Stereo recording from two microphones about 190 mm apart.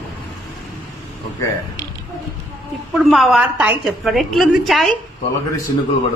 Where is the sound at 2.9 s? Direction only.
Centre (ahead or behind).